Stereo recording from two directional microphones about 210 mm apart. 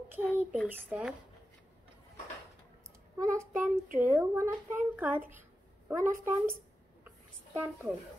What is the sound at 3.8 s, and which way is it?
Speech, 40° right (ahead or behind).